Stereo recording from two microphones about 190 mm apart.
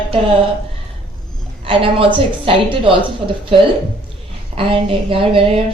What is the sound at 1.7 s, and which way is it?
A woman's voice, 30° right (ahead or behind).